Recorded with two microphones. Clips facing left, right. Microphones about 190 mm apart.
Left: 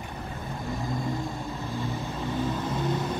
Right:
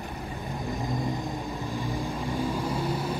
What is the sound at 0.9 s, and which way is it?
Vehicle, 15° right (ahead or behind).